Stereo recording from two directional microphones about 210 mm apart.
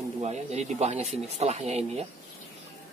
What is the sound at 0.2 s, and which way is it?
Speech, 30° right (ahead or behind).